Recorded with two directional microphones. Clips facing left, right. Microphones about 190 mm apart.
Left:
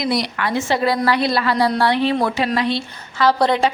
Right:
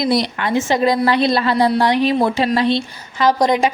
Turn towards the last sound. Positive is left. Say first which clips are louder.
# right 1 dB
turn(degrees=-15)  # may be behind; listen again after turning